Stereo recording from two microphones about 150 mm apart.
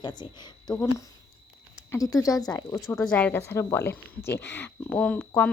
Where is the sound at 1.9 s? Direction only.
25° left (ahead or behind).